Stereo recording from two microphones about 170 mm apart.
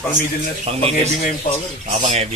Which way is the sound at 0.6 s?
35° right (ahead or behind).